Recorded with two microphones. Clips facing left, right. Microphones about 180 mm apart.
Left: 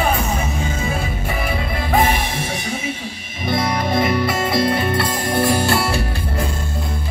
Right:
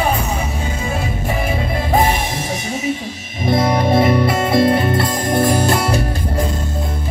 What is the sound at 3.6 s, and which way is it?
Music, 25° right (ahead or behind).